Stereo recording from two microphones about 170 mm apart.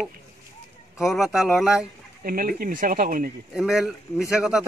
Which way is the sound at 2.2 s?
60° right (ahead or behind).